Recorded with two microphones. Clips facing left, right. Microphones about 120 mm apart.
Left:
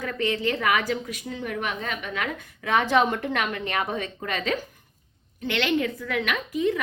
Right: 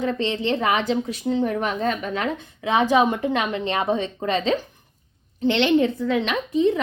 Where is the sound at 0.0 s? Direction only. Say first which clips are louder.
Right 3 dB; 25° right (ahead or behind).